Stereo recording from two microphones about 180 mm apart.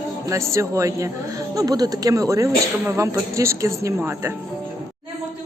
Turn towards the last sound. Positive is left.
turn(degrees=-15)  # may be behind; listen again after turning